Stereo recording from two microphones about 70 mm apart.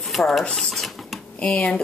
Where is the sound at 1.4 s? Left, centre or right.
Centre.